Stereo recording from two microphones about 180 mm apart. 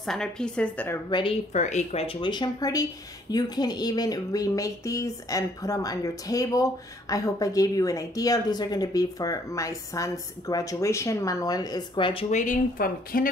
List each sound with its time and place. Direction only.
0.0 s a woman's voice: 5° left (ahead or behind)
1.5 s speech: 40° left (ahead or behind)